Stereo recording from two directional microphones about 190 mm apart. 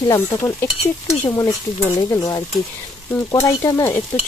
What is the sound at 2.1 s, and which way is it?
Speech, 20° left (ahead or behind).